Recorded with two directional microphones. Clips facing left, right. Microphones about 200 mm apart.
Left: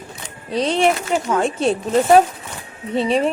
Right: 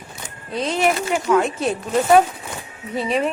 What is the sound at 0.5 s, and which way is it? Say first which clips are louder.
Speech: left 3 dB; 30° left (ahead or behind).